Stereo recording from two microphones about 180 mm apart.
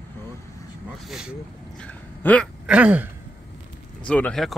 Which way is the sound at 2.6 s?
10° right (ahead or behind).